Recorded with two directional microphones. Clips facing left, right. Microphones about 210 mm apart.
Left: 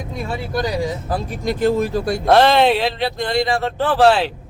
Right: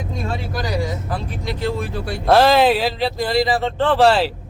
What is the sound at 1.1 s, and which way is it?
Speech, 45° left (ahead or behind).